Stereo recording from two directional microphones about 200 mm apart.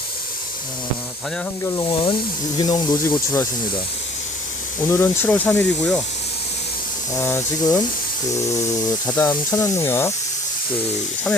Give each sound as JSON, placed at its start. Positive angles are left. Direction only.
{"t": 1.7, "sound": "speech", "side_deg": 20}
{"t": 4.9, "sound": "speech", "side_deg": 10}
{"t": 7.2, "sound": "speech", "side_deg": 10}
{"t": 9.1, "sound": "speech", "side_deg": 15}